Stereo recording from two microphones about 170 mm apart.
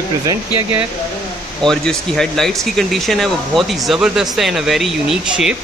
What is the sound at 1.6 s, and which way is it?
Speech, 5° left (ahead or behind).